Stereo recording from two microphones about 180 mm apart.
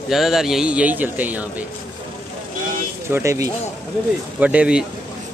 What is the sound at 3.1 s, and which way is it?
Speech, 15° right (ahead or behind).